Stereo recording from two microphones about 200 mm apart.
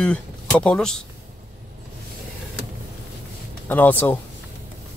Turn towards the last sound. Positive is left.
turn(degrees=10)  # may be behind; listen again after turning